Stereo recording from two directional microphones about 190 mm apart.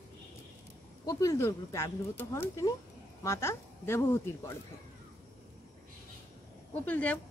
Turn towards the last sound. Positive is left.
turn(degrees=5)  # may be behind; listen again after turning